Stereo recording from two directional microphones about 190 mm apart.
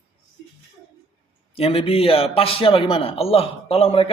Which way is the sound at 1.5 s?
30° left (ahead or behind).